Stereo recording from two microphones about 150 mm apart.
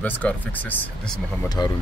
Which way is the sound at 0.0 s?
10° left (ahead or behind).